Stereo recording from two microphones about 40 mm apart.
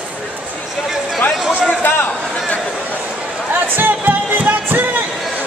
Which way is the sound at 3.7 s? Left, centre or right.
Right.